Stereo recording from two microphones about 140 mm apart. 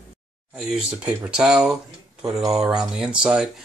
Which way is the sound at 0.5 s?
5° right (ahead or behind).